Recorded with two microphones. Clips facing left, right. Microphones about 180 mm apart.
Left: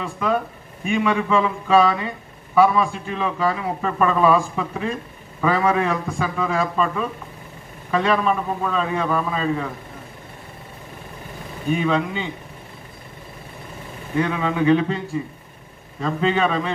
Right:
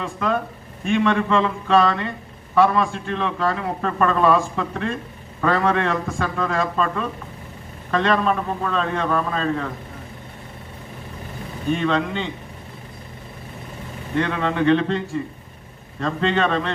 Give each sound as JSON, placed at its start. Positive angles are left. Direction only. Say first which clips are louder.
{"t": 0.0, "sound": "a man's voice", "louder": "left 1 dB", "side_deg": 5}
{"t": 11.7, "sound": "a man's voice", "louder": "even", "side_deg": 5}
{"t": 14.1, "sound": "a man's voice", "louder": "even", "side_deg": 5}